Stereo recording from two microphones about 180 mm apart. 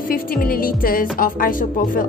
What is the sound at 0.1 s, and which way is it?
A woman's voice, 55° left (ahead or behind).